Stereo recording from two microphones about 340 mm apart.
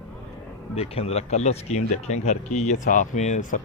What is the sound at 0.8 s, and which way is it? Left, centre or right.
Speech, centre.